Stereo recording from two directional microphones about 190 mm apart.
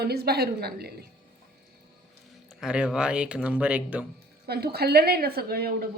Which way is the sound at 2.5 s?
5° right (ahead or behind).